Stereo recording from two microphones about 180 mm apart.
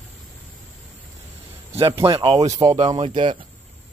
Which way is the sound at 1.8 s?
25° right (ahead or behind).